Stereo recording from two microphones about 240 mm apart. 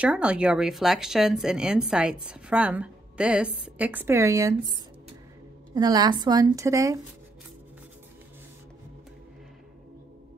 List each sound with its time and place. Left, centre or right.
0.0 s speech: centre
5.8 s a woman's voice: centre